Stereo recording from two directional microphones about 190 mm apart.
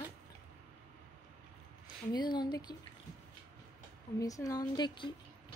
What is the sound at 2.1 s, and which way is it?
Speech, 25° left (ahead or behind).